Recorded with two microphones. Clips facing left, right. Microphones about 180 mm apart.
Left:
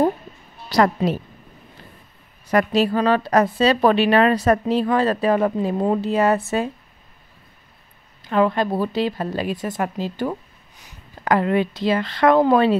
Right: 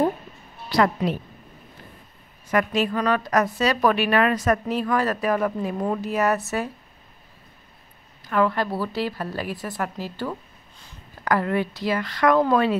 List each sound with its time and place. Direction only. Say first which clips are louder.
0.7 s a woman's voice: left 3 dB; 40° left (ahead or behind)
2.5 s a woman's voice: left 4 dB; 35° left (ahead or behind)
8.2 s speech: left 3 dB; 20° left (ahead or behind)